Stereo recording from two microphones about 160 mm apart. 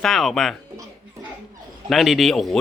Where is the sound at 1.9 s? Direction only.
Centre (ahead or behind).